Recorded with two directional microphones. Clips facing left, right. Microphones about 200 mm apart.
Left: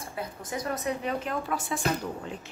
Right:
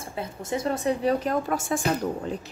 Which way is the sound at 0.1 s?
25° right (ahead or behind).